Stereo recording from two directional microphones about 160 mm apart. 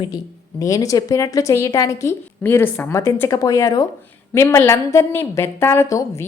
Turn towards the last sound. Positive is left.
turn(degrees=20)  # may be behind; listen again after turning